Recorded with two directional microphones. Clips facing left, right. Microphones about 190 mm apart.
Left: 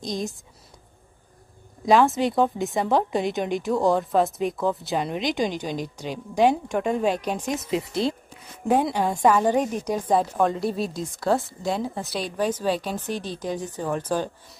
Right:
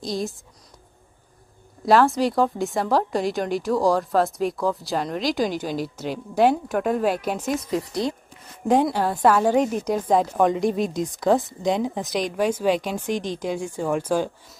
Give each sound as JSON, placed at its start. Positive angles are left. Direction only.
{"t": 0.0, "sound": "speech", "side_deg": 15}
{"t": 1.9, "sound": "a woman's voice", "side_deg": 0}
{"t": 7.5, "sound": "speech", "side_deg": 25}
{"t": 8.6, "sound": "speech", "side_deg": 10}
{"t": 9.3, "sound": "speech", "side_deg": -10}